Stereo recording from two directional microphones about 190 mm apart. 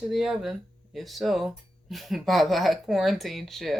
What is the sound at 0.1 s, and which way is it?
Speech, centre (ahead or behind).